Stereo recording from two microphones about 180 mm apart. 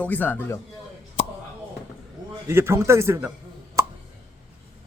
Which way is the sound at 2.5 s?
15° right (ahead or behind).